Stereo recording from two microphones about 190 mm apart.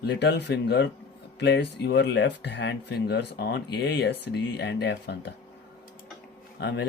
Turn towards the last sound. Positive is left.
turn(degrees=65)  # may be behind; listen again after turning